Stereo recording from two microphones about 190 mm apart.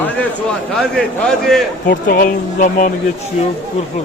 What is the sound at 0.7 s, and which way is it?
Speech, 5° left (ahead or behind).